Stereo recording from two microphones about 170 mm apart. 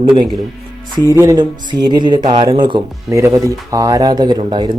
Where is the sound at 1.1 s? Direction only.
20° right (ahead or behind).